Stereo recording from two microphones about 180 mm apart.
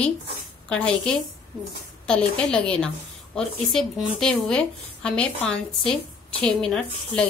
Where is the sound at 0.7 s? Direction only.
5° left (ahead or behind).